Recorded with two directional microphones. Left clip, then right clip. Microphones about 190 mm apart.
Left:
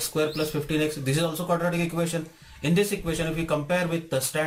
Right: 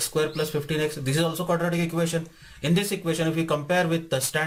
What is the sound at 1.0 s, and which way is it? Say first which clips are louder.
Speech: right 1 dB; 50° right (ahead or behind).